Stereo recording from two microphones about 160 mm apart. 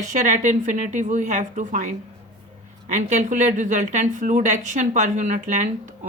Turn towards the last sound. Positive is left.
turn(degrees=-50)  # may be behind; listen again after turning